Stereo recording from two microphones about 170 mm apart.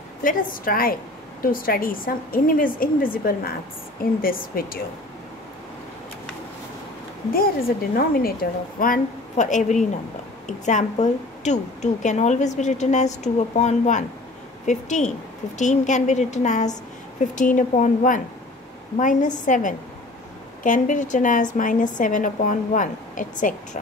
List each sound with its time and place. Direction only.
0.2 s a woman's voice: 55° left (ahead or behind)
7.9 s a woman's voice: 60° left (ahead or behind)